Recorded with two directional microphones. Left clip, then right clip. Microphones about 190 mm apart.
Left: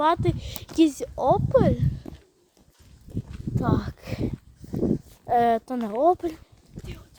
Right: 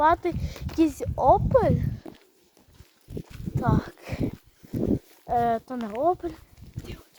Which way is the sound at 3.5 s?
5° left (ahead or behind).